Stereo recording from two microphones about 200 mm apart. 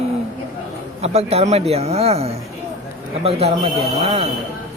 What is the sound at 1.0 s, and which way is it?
Speech, 30° right (ahead or behind).